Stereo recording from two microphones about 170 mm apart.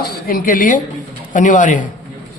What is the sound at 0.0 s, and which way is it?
Speech, 60° left (ahead or behind).